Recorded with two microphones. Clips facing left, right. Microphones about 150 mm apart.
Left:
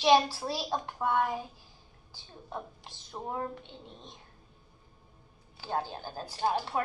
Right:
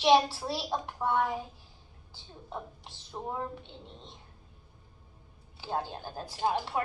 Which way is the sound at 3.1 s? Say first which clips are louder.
Even; 5° right (ahead or behind).